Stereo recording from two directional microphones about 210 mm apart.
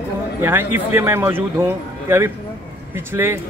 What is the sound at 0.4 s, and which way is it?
Speech, 10° right (ahead or behind).